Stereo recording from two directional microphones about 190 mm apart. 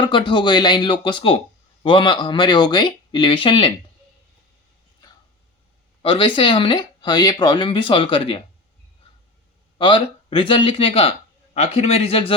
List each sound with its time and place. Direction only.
0.0 s speech: 25° left (ahead or behind)
6.0 s speech: 25° left (ahead or behind)
9.7 s a man's voice: 25° left (ahead or behind)